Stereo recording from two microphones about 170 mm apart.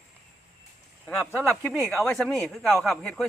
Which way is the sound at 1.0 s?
5° left (ahead or behind).